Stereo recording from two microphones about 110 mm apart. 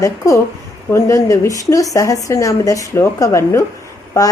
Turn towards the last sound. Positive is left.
turn(degrees=30)  # may be behind; listen again after turning